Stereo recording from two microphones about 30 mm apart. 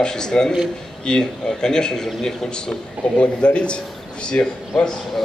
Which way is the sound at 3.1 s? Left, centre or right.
Left.